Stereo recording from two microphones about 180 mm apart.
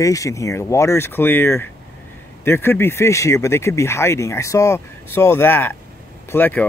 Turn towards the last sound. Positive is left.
turn(degrees=10)  # may be behind; listen again after turning